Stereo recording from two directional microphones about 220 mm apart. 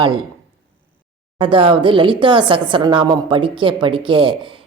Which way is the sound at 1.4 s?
20° right (ahead or behind).